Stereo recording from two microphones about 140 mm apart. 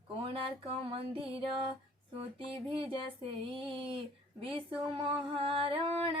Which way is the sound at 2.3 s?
40° right (ahead or behind).